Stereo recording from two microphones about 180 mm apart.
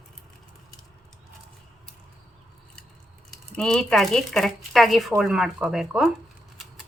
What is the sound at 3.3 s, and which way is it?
Speech, 5° left (ahead or behind).